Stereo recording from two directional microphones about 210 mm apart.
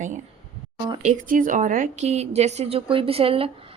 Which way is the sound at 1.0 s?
40° right (ahead or behind).